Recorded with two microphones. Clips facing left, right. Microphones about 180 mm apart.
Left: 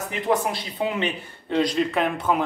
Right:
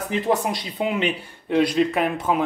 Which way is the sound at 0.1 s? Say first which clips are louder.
Right 2 dB; 20° right (ahead or behind).